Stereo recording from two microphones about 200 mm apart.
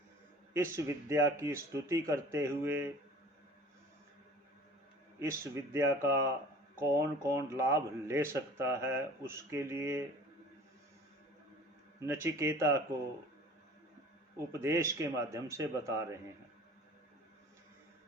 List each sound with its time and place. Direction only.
0.5 s speech: 15° right (ahead or behind)
5.2 s speech: 15° right (ahead or behind)
12.0 s speech: 15° right (ahead or behind)
14.3 s speech: 15° right (ahead or behind)